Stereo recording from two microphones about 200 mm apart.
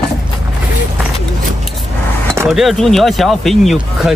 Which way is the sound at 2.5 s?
Centre (ahead or behind).